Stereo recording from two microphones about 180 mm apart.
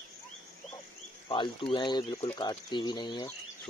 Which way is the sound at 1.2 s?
25° left (ahead or behind).